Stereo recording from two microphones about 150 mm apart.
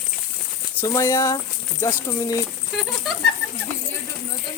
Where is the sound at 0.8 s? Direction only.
20° left (ahead or behind).